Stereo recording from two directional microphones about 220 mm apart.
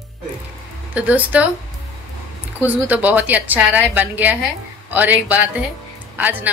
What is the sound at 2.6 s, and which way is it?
A woman's voice, 10° right (ahead or behind).